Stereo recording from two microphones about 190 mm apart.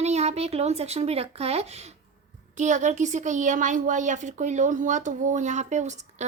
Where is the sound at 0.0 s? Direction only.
35° right (ahead or behind).